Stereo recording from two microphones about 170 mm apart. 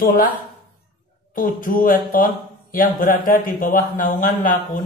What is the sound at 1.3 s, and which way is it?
Speech, 55° left (ahead or behind).